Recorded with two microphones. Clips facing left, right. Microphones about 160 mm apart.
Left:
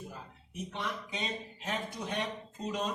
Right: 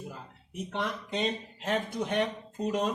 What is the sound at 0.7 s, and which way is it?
Speech, 65° right (ahead or behind).